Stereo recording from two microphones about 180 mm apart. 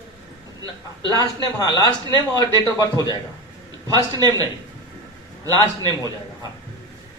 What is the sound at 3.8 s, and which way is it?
Speech, 20° right (ahead or behind).